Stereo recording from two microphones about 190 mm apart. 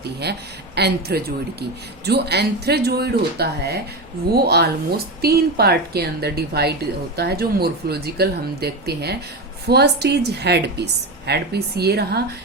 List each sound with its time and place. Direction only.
0.0 s speech: 60° right (ahead or behind)